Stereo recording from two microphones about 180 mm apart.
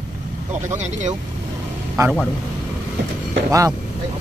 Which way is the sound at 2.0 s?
20° right (ahead or behind).